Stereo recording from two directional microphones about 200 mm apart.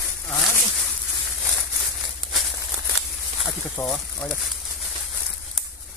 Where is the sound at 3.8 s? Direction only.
10° left (ahead or behind).